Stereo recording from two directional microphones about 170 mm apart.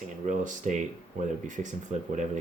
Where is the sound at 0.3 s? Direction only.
45° right (ahead or behind).